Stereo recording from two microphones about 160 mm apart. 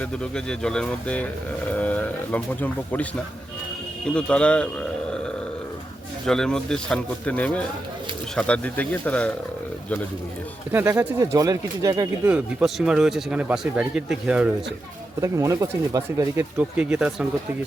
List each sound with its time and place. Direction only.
0.0 s speech: 5° left (ahead or behind)
6.2 s speech: 5° left (ahead or behind)
10.7 s speech: 15° right (ahead or behind)
12.3 s speech: 5° right (ahead or behind)
15.2 s speech: 20° right (ahead or behind)